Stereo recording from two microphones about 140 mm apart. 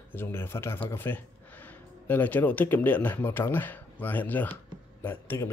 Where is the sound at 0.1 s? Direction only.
15° left (ahead or behind).